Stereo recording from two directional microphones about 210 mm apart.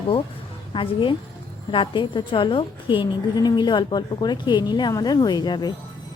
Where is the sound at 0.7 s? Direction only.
25° left (ahead or behind).